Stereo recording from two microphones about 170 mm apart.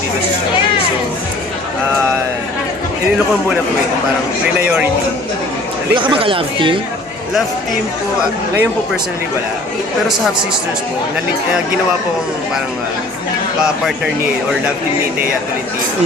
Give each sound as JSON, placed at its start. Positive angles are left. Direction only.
{"t": 4.6, "sound": "speech", "side_deg": -10}
{"t": 5.9, "sound": "speech", "side_deg": -30}